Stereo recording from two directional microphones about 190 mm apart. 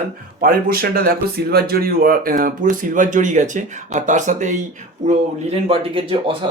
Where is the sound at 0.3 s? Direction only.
50° right (ahead or behind); by 6.3 s 30° right (ahead or behind).